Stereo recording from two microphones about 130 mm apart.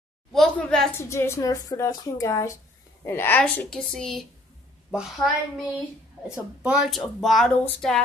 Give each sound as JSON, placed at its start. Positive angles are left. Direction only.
{"t": 0.3, "sound": "a sound", "side_deg": 5}
{"t": 0.9, "sound": "a woman's voice", "side_deg": 20}
{"t": 3.7, "sound": "speech", "side_deg": 5}
{"t": 6.6, "sound": "speech", "side_deg": -5}